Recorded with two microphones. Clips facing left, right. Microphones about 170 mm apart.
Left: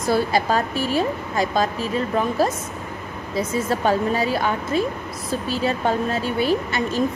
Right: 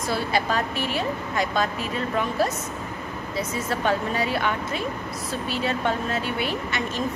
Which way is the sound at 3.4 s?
35° left (ahead or behind).